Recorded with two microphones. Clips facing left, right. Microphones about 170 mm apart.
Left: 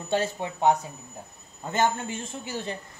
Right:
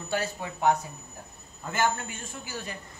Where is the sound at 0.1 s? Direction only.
25° left (ahead or behind).